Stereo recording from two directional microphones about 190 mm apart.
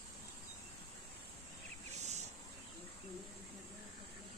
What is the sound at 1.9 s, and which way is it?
Insect, 35° right (ahead or behind).